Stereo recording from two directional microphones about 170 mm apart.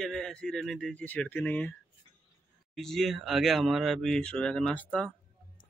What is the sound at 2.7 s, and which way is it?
Speech, centre (ahead or behind).